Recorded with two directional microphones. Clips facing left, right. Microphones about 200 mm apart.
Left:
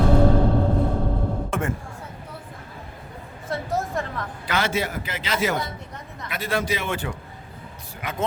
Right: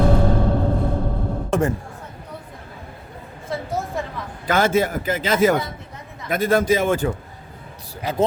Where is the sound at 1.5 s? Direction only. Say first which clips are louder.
Right 9 dB; 35° right (ahead or behind).